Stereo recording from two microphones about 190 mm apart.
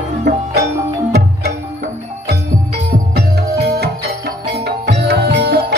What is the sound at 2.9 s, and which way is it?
Music, 60° right (ahead or behind).